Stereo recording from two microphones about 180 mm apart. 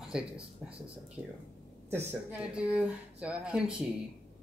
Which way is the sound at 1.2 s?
5° left (ahead or behind).